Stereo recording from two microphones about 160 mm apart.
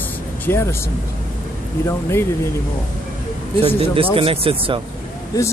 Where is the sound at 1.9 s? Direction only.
15° left (ahead or behind).